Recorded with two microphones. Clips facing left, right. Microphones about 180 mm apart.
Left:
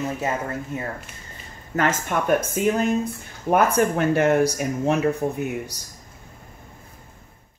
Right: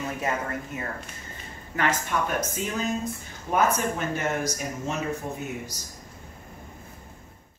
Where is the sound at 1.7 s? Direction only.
45° left (ahead or behind).